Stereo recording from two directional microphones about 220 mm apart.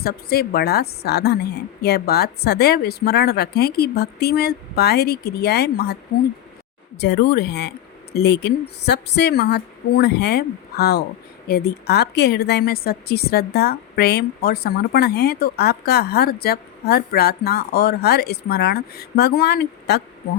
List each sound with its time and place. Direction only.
0.0 s a woman's voice: 45° left (ahead or behind)
7.0 s a woman's voice: 50° left (ahead or behind)